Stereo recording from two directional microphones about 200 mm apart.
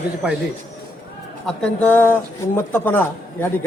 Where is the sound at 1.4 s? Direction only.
5° left (ahead or behind).